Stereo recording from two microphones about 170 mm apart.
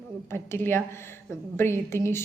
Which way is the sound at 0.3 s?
15° left (ahead or behind).